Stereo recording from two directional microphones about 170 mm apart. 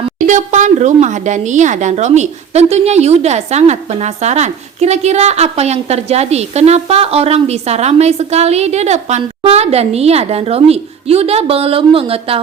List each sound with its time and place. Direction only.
0.2 s speech: 45° right (ahead or behind)